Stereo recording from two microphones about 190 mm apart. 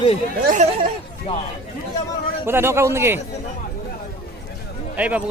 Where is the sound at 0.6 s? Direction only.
35° right (ahead or behind).